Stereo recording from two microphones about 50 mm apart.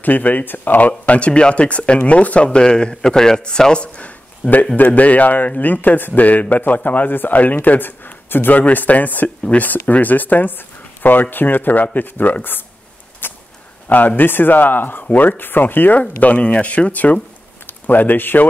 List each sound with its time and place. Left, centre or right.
0.0 s a man's voice: left
4.4 s speech: left
13.2 s a sound: left
13.8 s speech: left
16.0 s speech: left